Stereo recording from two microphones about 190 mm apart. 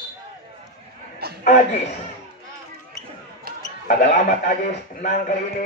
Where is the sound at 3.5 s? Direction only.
50° right (ahead or behind).